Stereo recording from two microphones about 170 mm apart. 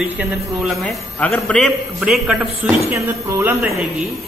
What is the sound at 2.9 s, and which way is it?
Speech, 15° right (ahead or behind).